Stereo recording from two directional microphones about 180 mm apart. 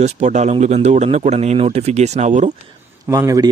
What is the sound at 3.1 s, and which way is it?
Speech, 20° right (ahead or behind).